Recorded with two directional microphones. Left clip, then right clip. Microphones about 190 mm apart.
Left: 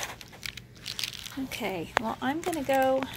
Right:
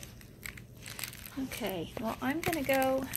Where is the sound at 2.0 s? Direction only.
10° left (ahead or behind).